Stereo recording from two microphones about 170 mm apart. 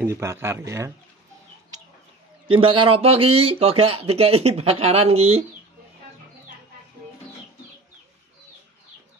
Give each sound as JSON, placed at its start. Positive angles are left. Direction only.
{"t": 0.0, "sound": "speech", "side_deg": -15}
{"t": 2.4, "sound": "speech", "side_deg": -30}